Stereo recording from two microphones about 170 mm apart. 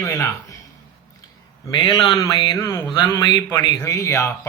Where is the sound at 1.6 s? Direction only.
25° left (ahead or behind).